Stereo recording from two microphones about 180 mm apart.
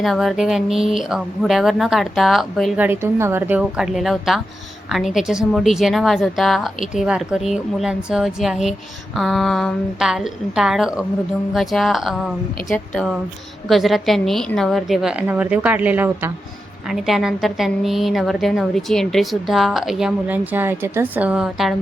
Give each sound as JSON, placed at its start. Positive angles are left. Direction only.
{"t": 0.0, "sound": "a woman's voice", "side_deg": 0}